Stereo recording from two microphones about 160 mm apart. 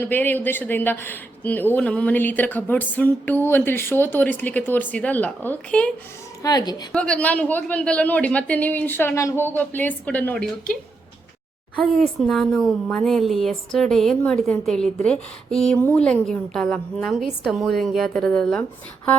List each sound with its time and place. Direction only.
0.0 s speech: 10° left (ahead or behind)
6.4 s a woman's voice: 25° left (ahead or behind)
6.9 s speech: 5° left (ahead or behind)
11.8 s a woman's voice: centre (ahead or behind)